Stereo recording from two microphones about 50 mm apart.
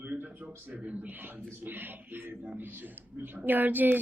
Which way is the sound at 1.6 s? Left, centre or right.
Right.